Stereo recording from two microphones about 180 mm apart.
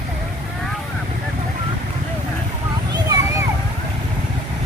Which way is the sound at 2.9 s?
20° right (ahead or behind).